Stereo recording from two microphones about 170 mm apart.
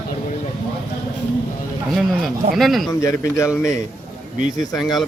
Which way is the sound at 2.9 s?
20° left (ahead or behind).